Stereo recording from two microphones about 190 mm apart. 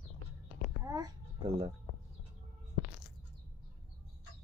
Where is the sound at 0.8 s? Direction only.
20° right (ahead or behind).